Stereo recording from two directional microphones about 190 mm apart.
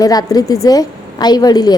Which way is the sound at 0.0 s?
20° left (ahead or behind).